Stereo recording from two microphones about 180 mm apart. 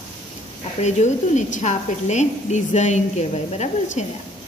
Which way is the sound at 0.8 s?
40° left (ahead or behind).